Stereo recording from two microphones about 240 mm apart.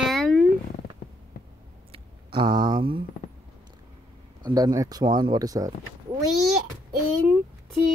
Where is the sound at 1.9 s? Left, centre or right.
Centre.